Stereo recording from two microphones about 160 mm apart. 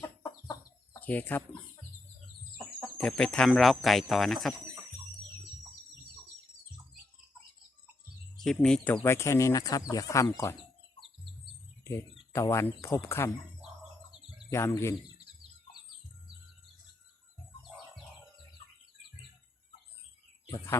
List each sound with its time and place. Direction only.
0.2 s chicken: 25° left (ahead or behind)
0.9 s speech: 10° left (ahead or behind)
3.0 s speech: 5° left (ahead or behind)
8.4 s speech: 5° left (ahead or behind); by 10.5 s 20° left (ahead or behind)
11.9 s speech: 15° left (ahead or behind)
14.5 s speech: 15° left (ahead or behind)